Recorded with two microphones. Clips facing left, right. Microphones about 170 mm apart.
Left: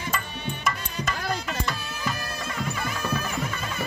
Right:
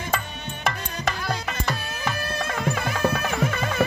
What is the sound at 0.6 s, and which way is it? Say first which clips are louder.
Music: right 4 dB; 60° right (ahead or behind).